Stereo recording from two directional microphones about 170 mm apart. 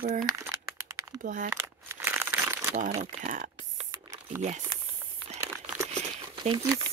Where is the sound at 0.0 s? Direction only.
55° right (ahead or behind).